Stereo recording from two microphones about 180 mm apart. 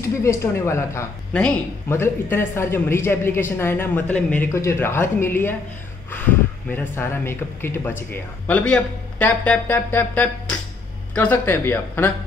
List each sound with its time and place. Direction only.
0.0 s a woman's voice: 15° left (ahead or behind)
6.7 s a woman's voice: 10° left (ahead or behind)